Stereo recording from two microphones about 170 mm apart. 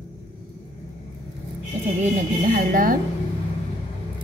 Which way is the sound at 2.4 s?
55° right (ahead or behind).